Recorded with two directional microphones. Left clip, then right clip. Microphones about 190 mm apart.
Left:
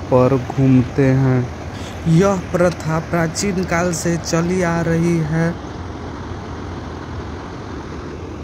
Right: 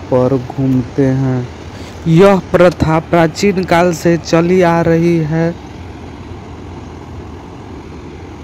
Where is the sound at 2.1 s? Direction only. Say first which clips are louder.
Right 8 dB; 35° right (ahead or behind).